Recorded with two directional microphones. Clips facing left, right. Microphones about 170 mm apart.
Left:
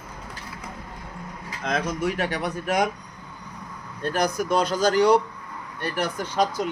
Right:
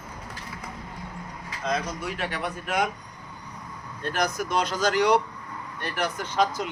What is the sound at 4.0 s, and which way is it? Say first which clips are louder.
Speech: left 3 dB; 35° left (ahead or behind).